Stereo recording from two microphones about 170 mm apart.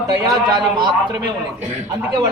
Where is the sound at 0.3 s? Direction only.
25° right (ahead or behind).